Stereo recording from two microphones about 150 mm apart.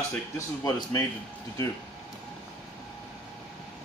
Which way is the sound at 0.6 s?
25° left (ahead or behind).